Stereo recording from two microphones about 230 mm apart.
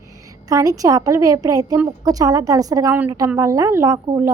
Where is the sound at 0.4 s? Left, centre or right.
Centre.